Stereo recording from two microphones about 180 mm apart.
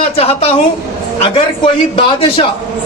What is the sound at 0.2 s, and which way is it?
Speech, 35° left (ahead or behind).